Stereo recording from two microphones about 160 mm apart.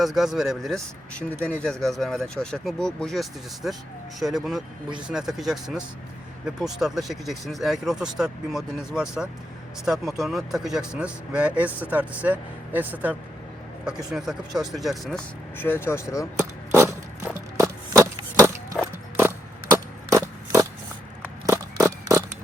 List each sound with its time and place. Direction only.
0.0 s speech: centre (ahead or behind)
1.4 s speech: 15° right (ahead or behind)
1.6 s speech: 5° left (ahead or behind)
15.5 s speech: 15° left (ahead or behind)
17.6 s a sound: 20° right (ahead or behind)
20.1 s a sound: 20° right (ahead or behind)